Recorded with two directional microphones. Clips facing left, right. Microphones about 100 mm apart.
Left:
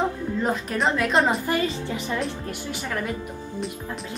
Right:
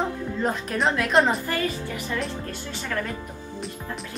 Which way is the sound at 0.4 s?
Centre (ahead or behind).